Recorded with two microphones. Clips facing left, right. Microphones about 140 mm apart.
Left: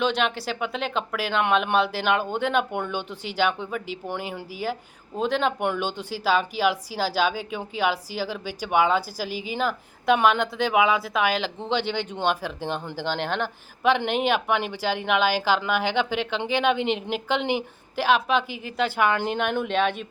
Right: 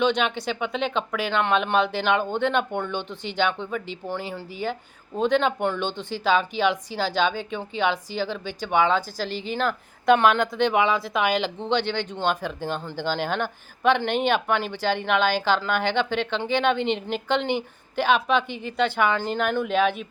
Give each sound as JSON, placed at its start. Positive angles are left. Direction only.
{"t": 0.0, "sound": "speech", "side_deg": 0}